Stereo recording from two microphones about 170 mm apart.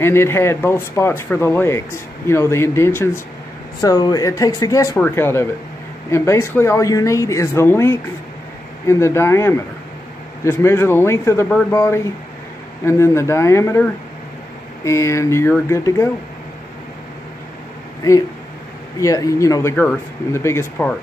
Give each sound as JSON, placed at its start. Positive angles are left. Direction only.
{"t": 0.0, "sound": "speech", "side_deg": 15}
{"t": 14.9, "sound": "speech", "side_deg": 15}
{"t": 18.9, "sound": "speech", "side_deg": 20}